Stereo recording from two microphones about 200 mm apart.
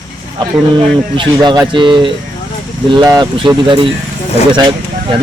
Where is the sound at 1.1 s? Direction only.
25° right (ahead or behind).